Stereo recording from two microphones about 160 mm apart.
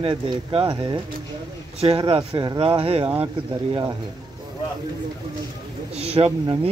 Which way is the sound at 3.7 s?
25° right (ahead or behind).